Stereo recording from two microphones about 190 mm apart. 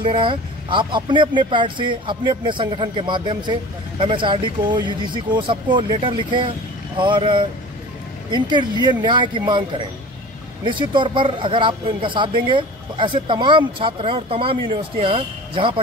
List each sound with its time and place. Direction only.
0.0 s a man's voice: 25° right (ahead or behind)